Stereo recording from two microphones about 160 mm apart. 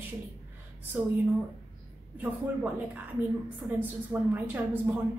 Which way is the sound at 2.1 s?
10° right (ahead or behind).